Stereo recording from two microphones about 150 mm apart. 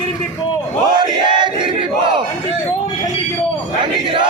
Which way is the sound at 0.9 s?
30° right (ahead or behind).